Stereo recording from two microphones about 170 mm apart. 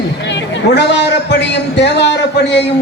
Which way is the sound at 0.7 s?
90° left.